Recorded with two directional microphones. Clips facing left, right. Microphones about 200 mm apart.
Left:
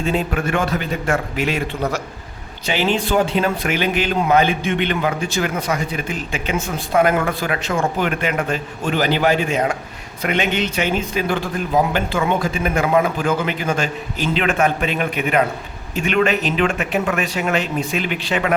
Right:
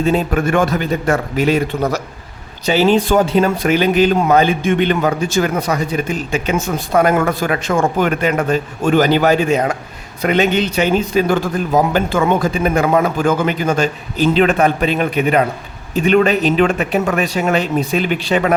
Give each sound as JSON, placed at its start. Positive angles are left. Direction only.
{"t": 0.0, "sound": "speech", "side_deg": -40}